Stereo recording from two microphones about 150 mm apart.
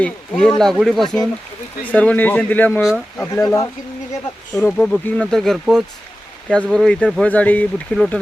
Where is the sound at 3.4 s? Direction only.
20° left (ahead or behind).